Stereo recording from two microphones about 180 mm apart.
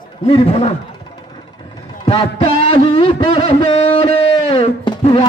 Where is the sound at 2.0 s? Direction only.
35° left (ahead or behind).